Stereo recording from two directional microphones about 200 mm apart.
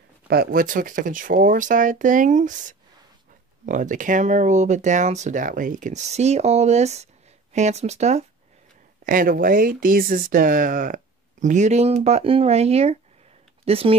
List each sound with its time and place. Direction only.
0.3 s speech: 50° right (ahead or behind); by 13.9 s 30° right (ahead or behind)